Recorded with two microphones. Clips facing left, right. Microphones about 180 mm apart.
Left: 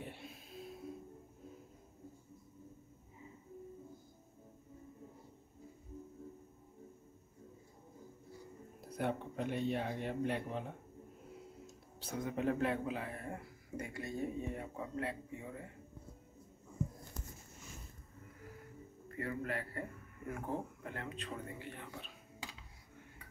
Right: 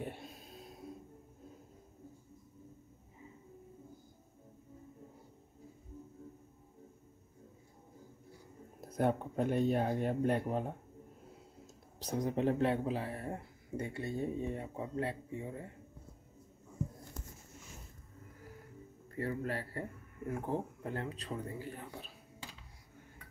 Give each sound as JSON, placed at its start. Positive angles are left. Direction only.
{"t": 0.0, "sound": "music", "side_deg": -40}
{"t": 8.8, "sound": "speech", "side_deg": -45}
{"t": 11.6, "sound": "speech", "side_deg": -40}
{"t": 19.1, "sound": "speech", "side_deg": -30}